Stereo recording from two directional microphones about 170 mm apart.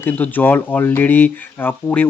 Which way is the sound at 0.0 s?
10° left (ahead or behind).